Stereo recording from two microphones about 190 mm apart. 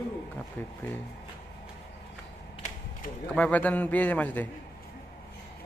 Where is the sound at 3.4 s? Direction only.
10° left (ahead or behind).